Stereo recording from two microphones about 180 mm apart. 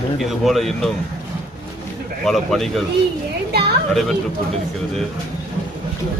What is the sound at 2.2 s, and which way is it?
Speech, centre (ahead or behind).